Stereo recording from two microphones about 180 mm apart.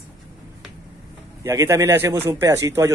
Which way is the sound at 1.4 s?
15° right (ahead or behind).